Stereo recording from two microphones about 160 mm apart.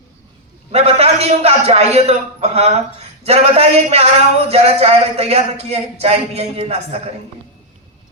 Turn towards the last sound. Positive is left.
turn(degrees=-40)  # may be behind; listen again after turning